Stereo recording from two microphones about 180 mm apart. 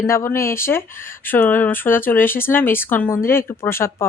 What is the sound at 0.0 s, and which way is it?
Speech, 15° left (ahead or behind).